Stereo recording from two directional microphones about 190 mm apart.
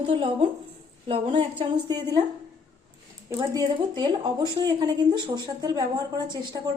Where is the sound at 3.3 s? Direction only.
20° right (ahead or behind).